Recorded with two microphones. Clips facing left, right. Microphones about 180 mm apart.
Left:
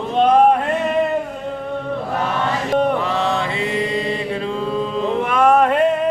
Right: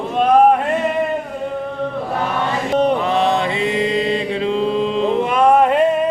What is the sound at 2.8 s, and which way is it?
Mantra, 20° right (ahead or behind).